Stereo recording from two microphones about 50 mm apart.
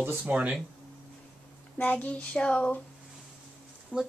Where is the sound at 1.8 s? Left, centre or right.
Left.